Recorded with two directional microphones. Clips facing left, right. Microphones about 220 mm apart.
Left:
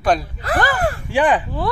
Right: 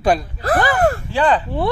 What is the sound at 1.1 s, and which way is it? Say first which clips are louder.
Speech: left 5 dB; 15° left (ahead or behind).